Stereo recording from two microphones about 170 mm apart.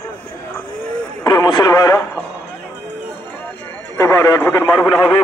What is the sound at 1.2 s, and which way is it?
Radio, 25° left (ahead or behind).